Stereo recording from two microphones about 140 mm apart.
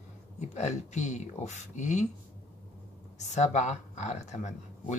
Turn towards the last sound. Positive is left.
turn(degrees=55)  # may be behind; listen again after turning